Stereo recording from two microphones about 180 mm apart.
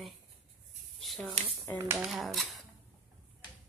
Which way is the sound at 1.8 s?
15° right (ahead or behind).